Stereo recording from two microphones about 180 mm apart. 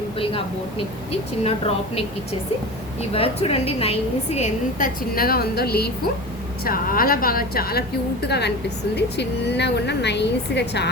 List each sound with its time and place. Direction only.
1.5 s a woman's voice: 35° left (ahead or behind)
3.1 s a woman's voice: 30° left (ahead or behind); by 10.8 s 70° left (ahead or behind)